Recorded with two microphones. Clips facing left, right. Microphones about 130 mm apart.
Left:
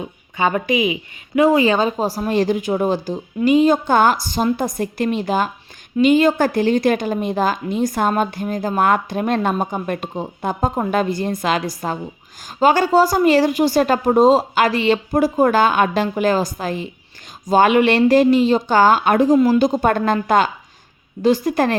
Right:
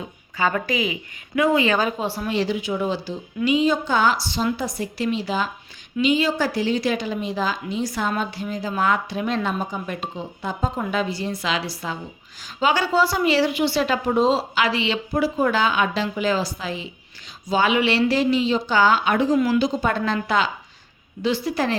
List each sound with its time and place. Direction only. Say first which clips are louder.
0.3 s a woman's voice: left 4 dB; 20° left (ahead or behind)
1.4 s a woman's voice: left 5 dB; 30° left (ahead or behind); by 21.8 s 50° left (ahead or behind)